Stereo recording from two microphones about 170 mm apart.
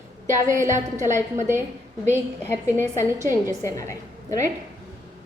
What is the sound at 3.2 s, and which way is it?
Speech, 15° right (ahead or behind).